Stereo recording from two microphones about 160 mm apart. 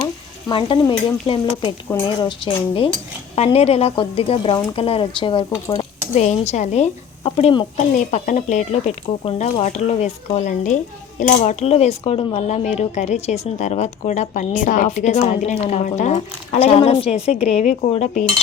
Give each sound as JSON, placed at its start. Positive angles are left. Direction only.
{"t": 0.0, "sound": "speech", "side_deg": 30}
{"t": 6.1, "sound": "speech", "side_deg": 45}